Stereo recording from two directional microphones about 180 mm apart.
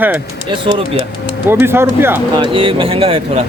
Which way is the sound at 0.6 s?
30° right (ahead or behind).